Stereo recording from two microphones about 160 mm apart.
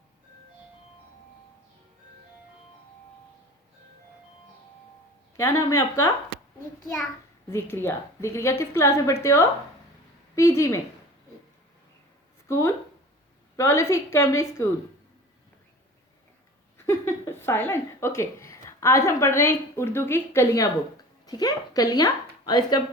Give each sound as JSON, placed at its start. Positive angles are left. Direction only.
{"t": 5.4, "sound": "a woman's voice", "side_deg": 20}
{"t": 7.5, "sound": "a woman's voice", "side_deg": 15}
{"t": 12.5, "sound": "a woman's voice", "side_deg": 20}
{"t": 16.7, "sound": "speech", "side_deg": 15}